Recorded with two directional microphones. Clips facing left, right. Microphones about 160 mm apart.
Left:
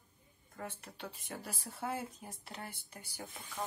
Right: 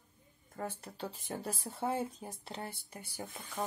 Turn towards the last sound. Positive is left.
turn(degrees=-20)  # may be behind; listen again after turning